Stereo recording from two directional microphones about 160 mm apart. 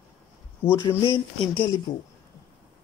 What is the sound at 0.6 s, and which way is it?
Speech, 15° left (ahead or behind).